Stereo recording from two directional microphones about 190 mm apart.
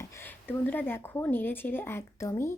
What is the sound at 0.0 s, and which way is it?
Speech, 10° left (ahead or behind).